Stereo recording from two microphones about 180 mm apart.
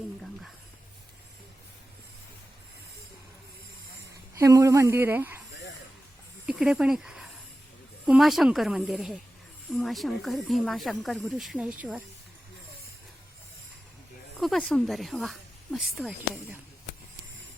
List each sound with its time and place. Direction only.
4.4 s speech: 20° right (ahead or behind)
6.4 s speech: 5° right (ahead or behind)
14.3 s speech: centre (ahead or behind)